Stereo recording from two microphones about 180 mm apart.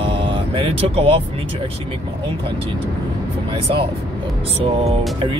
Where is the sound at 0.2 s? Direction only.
30° right (ahead or behind).